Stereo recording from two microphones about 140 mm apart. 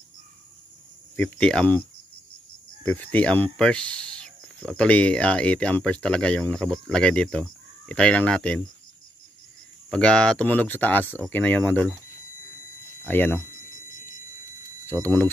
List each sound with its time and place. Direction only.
1.1 s speech: 5° left (ahead or behind)
9.8 s speech: 5° left (ahead or behind)
13.0 s speech: 15° left (ahead or behind)
14.9 s speech: 15° left (ahead or behind)